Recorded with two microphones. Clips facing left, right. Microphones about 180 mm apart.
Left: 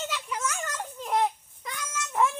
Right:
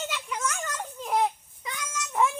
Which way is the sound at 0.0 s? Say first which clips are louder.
Even; centre (ahead or behind).